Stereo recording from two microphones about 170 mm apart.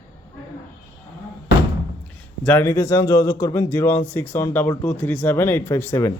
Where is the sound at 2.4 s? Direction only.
10° left (ahead or behind).